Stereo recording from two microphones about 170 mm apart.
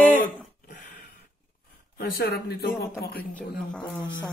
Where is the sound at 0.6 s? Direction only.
50° left (ahead or behind).